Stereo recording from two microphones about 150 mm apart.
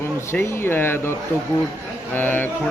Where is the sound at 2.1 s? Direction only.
10° left (ahead or behind).